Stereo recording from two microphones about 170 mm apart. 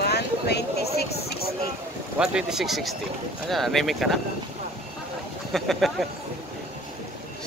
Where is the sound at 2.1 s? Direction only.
5° right (ahead or behind).